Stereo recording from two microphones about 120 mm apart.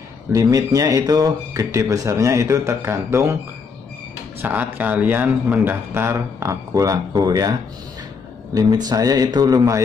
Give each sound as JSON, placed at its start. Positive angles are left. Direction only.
{"t": 0.3, "sound": "speech", "side_deg": -30}
{"t": 4.4, "sound": "speech", "side_deg": -15}
{"t": 8.5, "sound": "speech", "side_deg": -35}